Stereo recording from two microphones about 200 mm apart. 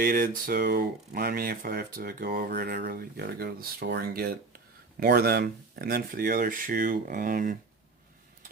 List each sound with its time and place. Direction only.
0.0 s speech: 45° right (ahead or behind)